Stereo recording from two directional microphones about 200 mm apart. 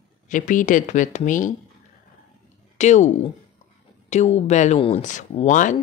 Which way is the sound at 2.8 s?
35° left (ahead or behind).